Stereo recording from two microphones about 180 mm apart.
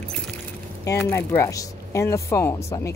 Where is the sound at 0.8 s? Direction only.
15° left (ahead or behind).